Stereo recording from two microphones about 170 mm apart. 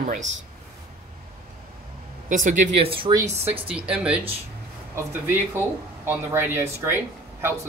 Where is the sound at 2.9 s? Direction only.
30° right (ahead or behind).